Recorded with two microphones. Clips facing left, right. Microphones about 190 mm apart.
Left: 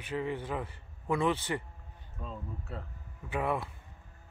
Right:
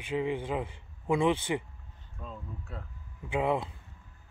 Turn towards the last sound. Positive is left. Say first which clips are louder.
# right 3 dB
turn(degrees=-20)  # may be behind; listen again after turning